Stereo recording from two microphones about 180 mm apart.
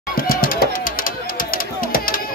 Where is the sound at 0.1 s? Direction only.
50° left (ahead or behind).